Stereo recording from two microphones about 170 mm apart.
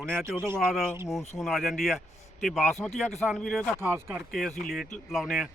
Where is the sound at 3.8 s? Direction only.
15° right (ahead or behind).